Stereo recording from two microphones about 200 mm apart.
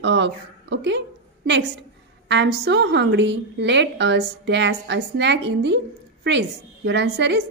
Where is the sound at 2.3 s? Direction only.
60° right (ahead or behind).